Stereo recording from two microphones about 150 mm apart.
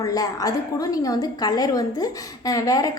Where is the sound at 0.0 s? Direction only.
25° left (ahead or behind).